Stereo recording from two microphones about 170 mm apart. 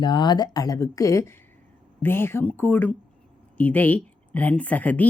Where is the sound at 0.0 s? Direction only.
25° left (ahead or behind).